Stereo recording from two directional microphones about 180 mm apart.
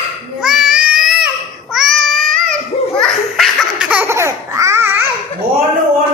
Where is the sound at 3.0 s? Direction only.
Centre (ahead or behind).